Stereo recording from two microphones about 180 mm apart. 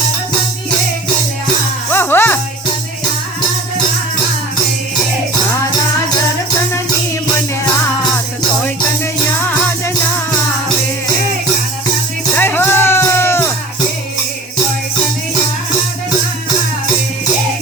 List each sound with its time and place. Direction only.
1.9 s music: 10° left (ahead or behind)
12.4 s music: 10° left (ahead or behind)